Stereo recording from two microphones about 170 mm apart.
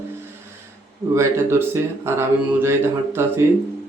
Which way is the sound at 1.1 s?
15° right (ahead or behind).